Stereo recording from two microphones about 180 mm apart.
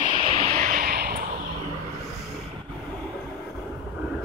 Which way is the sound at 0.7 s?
55° right (ahead or behind).